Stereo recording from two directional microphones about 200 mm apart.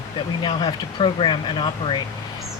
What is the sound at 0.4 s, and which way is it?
Speech, 25° left (ahead or behind).